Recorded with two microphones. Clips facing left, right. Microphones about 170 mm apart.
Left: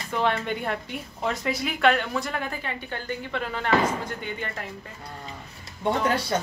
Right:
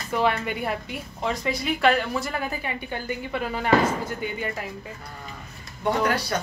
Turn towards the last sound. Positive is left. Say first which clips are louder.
# even
turn(degrees=25)  # may be behind; listen again after turning